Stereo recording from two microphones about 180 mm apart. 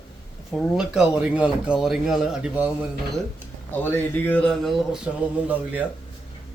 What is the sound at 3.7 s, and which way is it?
Speech, 10° left (ahead or behind).